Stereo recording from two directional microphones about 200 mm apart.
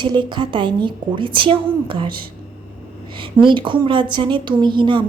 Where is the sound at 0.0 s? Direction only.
25° right (ahead or behind).